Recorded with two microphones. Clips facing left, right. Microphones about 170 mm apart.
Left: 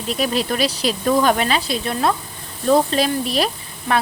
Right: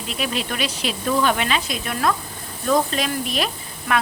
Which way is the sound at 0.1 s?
40° left (ahead or behind).